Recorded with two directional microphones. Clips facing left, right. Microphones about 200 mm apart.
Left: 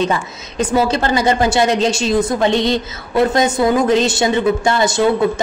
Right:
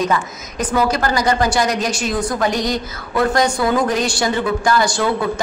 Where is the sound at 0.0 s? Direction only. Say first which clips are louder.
Left 1 dB; 25° left (ahead or behind).